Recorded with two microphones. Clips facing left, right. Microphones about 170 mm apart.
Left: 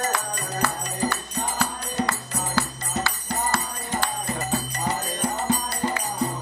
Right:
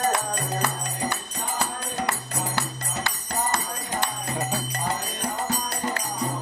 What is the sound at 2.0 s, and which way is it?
Music, 20° right (ahead or behind).